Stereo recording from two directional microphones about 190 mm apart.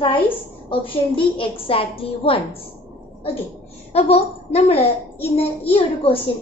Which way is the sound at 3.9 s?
35° left (ahead or behind).